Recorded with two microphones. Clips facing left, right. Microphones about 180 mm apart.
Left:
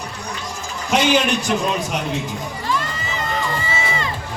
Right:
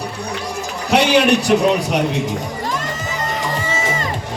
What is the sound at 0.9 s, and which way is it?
Speech, 70° right (ahead or behind).